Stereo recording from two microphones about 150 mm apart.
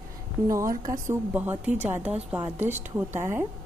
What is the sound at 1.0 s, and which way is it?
Speech, 15° right (ahead or behind).